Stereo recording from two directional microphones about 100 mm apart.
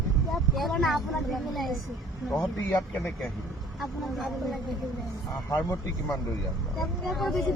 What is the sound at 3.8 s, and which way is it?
Speech, centre (ahead or behind).